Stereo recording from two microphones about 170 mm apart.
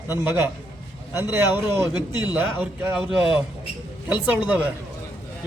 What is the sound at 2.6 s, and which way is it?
Speech, 10° right (ahead or behind).